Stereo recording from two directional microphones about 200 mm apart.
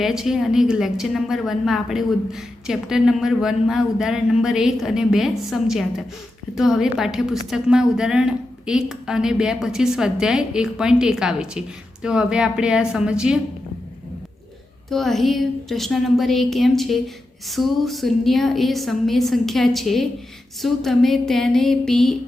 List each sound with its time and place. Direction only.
0.0 s a woman's voice: centre (ahead or behind)
14.8 s a woman's voice: centre (ahead or behind)